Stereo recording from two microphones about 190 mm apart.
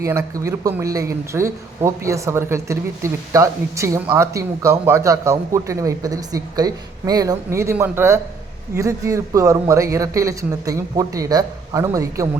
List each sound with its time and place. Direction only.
0.0 s speech: 15° right (ahead or behind)